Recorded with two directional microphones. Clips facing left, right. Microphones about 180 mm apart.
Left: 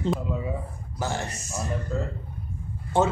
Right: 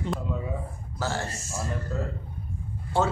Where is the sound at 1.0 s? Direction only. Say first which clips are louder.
Even; 20° left (ahead or behind).